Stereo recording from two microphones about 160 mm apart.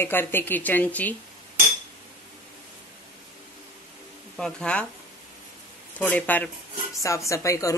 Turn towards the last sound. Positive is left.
turn(degrees=20)  # may be behind; listen again after turning